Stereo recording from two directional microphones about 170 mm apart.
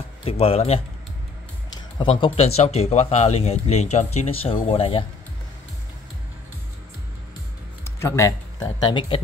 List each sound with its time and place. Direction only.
0.2 s speech: 35° left (ahead or behind)
7.8 s speech: 15° left (ahead or behind)